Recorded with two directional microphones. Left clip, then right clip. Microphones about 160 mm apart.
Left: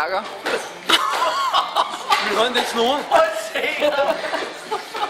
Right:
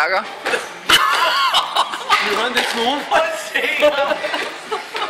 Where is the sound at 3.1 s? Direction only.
Centre (ahead or behind).